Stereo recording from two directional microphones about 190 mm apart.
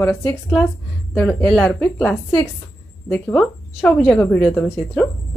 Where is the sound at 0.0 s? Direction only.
10° left (ahead or behind).